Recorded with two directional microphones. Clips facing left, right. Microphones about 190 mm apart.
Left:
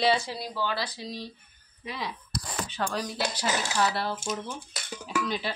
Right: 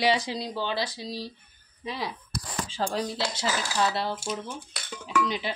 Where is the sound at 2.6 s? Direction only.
30° right (ahead or behind).